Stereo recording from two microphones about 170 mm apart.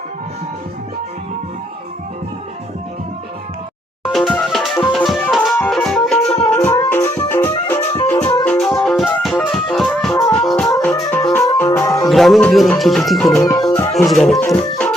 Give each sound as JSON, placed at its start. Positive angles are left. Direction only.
{"t": 4.0, "sound": "music", "side_deg": 0}
{"t": 8.1, "sound": "music", "side_deg": 30}
{"t": 8.4, "sound": "music", "side_deg": 5}
{"t": 12.0, "sound": "music", "side_deg": 0}
{"t": 12.8, "sound": "speech", "side_deg": 0}
{"t": 13.5, "sound": "music", "side_deg": 20}
{"t": 13.9, "sound": "speech", "side_deg": 0}